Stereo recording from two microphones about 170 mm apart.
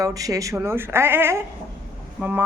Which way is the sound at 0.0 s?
20° right (ahead or behind).